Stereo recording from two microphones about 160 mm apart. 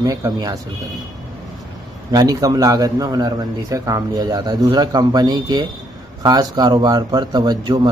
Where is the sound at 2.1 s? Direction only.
25° right (ahead or behind).